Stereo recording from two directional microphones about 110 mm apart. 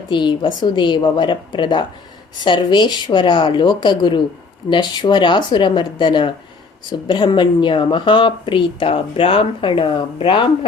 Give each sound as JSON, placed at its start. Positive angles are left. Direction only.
{"t": 0.1, "sound": "a woman's voice", "side_deg": 45}